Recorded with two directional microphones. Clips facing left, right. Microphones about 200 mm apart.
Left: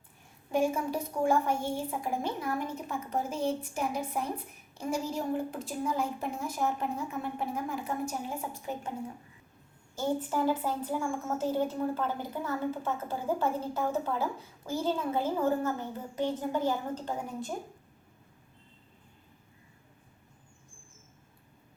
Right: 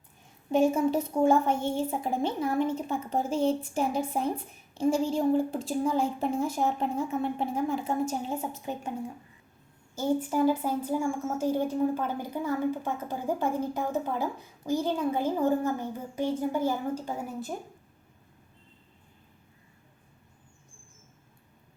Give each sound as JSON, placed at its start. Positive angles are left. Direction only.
{"t": 0.5, "sound": "a woman's voice", "side_deg": -25}
{"t": 9.9, "sound": "a woman's voice", "side_deg": -10}